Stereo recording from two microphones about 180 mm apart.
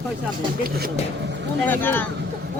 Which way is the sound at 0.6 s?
55° right (ahead or behind).